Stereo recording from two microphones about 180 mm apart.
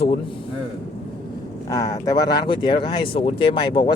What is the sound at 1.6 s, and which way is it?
Speech, 20° left (ahead or behind).